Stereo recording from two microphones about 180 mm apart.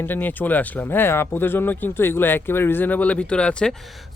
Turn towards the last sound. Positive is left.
turn(degrees=0)  # may be behind; listen again after turning